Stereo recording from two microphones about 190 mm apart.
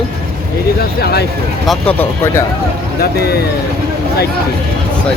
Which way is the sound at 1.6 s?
10° left (ahead or behind).